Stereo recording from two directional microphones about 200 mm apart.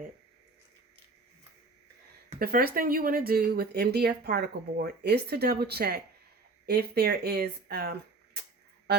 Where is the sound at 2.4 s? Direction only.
50° right (ahead or behind).